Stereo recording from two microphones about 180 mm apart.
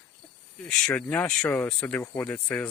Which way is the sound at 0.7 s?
5° left (ahead or behind).